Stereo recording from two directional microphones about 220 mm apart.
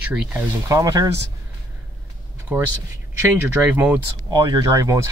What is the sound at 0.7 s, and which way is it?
Speech, 15° right (ahead or behind).